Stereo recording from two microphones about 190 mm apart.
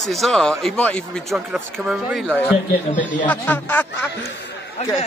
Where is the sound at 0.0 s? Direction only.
Centre (ahead or behind).